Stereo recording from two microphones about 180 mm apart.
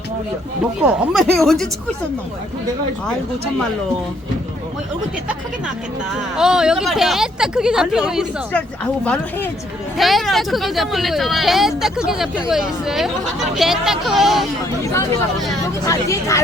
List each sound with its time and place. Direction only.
0.6 s speech: 5° right (ahead or behind)
6.1 s speech: 5° right (ahead or behind)
15.9 s speech: 15° left (ahead or behind)